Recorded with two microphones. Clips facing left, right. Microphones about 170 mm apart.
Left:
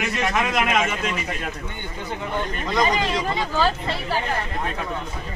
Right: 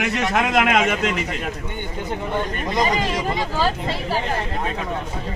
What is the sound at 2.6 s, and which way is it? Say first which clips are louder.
Speech: left 1 dB; 20° right (ahead or behind).